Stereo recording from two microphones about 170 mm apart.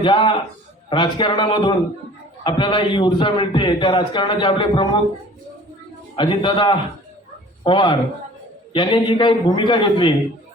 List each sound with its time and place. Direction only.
0.0 s a man's voice: 30° left (ahead or behind)
6.1 s a man's voice: 30° left (ahead or behind)